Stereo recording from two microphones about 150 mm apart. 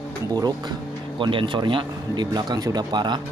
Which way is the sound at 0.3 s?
25° right (ahead or behind).